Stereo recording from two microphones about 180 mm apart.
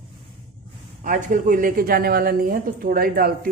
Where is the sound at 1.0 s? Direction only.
45° right (ahead or behind).